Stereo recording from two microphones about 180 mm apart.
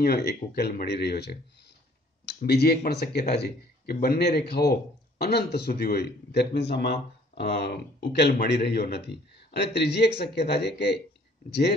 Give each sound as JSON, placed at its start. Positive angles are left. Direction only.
{"t": 0.0, "sound": "a man's voice", "side_deg": 60}